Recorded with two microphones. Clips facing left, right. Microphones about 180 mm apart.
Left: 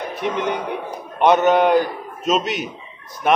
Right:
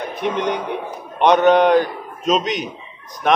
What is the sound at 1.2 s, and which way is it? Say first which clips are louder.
A man's voice: right 2 dB; 5° left (ahead or behind).